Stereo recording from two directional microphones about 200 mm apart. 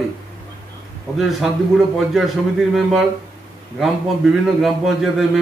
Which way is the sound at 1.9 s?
Centre (ahead or behind).